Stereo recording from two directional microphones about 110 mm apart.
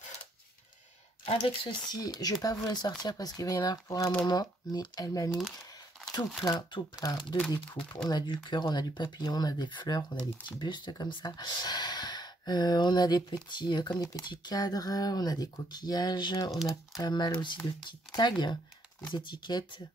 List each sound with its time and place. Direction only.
1.2 s speech: 55° left (ahead or behind)
8.1 s speech: 40° left (ahead or behind)